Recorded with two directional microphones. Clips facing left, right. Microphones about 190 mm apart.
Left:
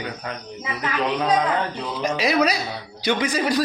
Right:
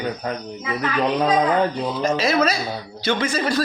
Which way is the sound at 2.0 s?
15° left (ahead or behind).